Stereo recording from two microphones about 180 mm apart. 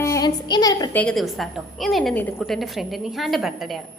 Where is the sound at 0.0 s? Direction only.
20° left (ahead or behind).